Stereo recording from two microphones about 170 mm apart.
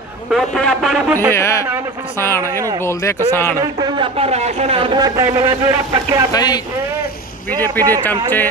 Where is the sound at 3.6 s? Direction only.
25° right (ahead or behind).